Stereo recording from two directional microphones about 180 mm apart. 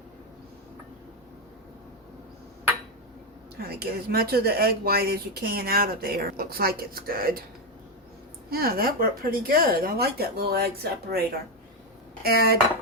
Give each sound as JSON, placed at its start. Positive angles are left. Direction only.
{"t": 3.6, "sound": "speech", "side_deg": -60}
{"t": 8.4, "sound": "speech", "side_deg": -55}